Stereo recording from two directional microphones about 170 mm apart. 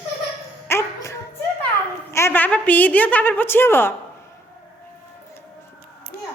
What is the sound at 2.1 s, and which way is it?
A woman's voice, 15° left (ahead or behind).